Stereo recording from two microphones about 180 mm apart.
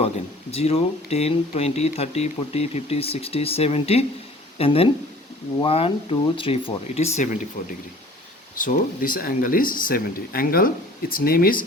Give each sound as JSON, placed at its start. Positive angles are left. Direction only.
{"t": 0.5, "sound": "speech", "side_deg": 35}
{"t": 8.6, "sound": "speech", "side_deg": 50}